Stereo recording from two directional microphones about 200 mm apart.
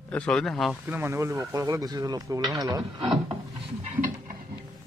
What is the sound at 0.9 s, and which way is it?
Speech, 10° right (ahead or behind).